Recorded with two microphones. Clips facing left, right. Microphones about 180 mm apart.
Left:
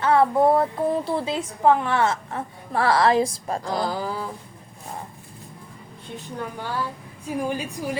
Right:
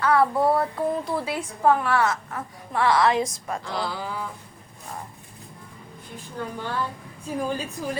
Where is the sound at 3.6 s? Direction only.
45° left (ahead or behind).